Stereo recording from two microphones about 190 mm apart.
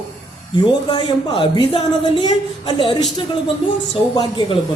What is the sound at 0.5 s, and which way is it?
A woman's voice, 25° left (ahead or behind).